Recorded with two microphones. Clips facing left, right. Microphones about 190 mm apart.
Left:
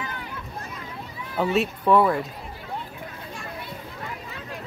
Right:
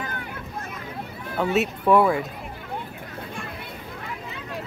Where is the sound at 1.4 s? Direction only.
Centre (ahead or behind).